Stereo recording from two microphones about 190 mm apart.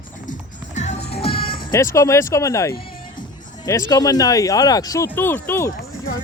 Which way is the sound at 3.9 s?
20° left (ahead or behind).